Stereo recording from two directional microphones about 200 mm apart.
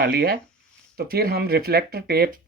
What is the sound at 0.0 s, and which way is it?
Speech, 50° right (ahead or behind).